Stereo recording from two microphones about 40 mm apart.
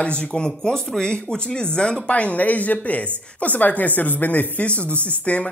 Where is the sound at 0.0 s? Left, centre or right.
Left.